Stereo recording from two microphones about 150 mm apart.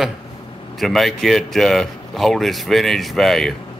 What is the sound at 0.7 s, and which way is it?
Speech, centre (ahead or behind).